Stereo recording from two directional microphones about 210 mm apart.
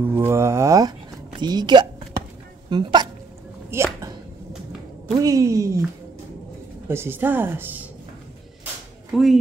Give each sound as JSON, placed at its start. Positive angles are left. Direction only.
{"t": 0.0, "sound": "a woman's voice", "side_deg": -10}
{"t": 5.1, "sound": "a woman's voice", "side_deg": -15}
{"t": 6.9, "sound": "a woman's voice", "side_deg": -10}
{"t": 9.1, "sound": "speech", "side_deg": 0}